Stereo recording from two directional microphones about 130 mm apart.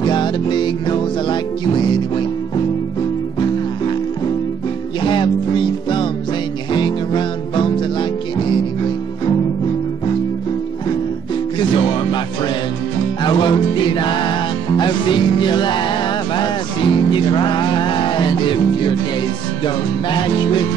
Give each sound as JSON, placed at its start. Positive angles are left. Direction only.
{"t": 0.0, "sound": "music", "side_deg": 35}
{"t": 5.0, "sound": "music", "side_deg": 40}
{"t": 11.5, "sound": "music", "side_deg": 40}
{"t": 13.2, "sound": "music", "side_deg": 35}